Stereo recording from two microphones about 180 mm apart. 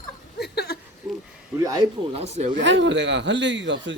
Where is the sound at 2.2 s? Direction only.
40° right (ahead or behind).